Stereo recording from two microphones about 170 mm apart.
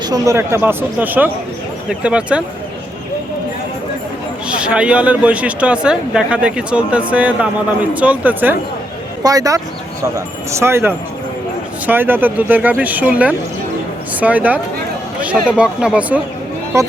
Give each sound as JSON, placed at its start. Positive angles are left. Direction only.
{"t": 0.1, "sound": "speech", "side_deg": -15}
{"t": 4.4, "sound": "speech", "side_deg": -5}
{"t": 9.2, "sound": "speech", "side_deg": -20}